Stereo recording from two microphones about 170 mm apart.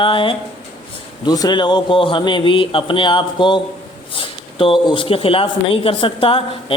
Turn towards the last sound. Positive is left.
turn(degrees=30)  # may be behind; listen again after turning